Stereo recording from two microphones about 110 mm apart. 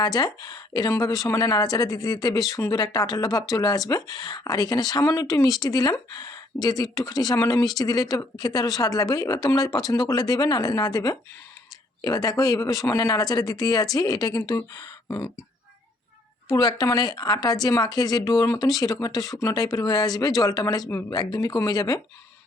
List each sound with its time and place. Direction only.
0.0 s speech: 40° left (ahead or behind)
16.5 s speech: 35° left (ahead or behind)